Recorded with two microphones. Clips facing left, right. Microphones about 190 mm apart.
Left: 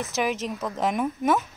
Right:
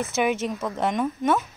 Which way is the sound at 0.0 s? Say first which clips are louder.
Right 3 dB; centre (ahead or behind).